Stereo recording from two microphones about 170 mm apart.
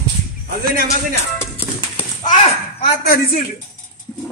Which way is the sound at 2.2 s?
45° left (ahead or behind).